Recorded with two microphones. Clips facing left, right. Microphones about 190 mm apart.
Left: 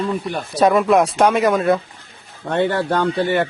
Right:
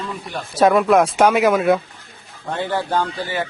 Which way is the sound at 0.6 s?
Centre (ahead or behind).